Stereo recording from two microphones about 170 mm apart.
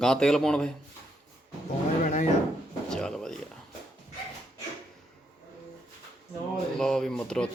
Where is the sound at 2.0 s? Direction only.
50° left (ahead or behind).